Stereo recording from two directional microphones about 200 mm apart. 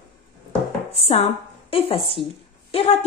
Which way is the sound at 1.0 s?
30° left (ahead or behind).